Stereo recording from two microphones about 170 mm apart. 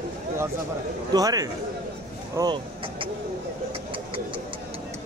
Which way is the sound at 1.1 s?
20° right (ahead or behind).